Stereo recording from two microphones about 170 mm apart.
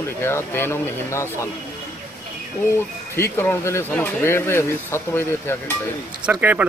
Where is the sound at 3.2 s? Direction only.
15° left (ahead or behind).